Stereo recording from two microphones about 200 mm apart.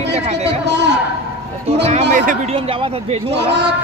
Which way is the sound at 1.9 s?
35° right (ahead or behind).